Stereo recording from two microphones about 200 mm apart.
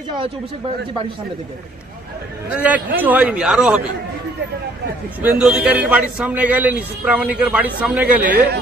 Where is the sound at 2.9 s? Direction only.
10° right (ahead or behind).